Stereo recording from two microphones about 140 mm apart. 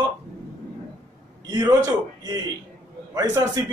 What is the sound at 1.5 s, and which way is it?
Speech, 30° right (ahead or behind).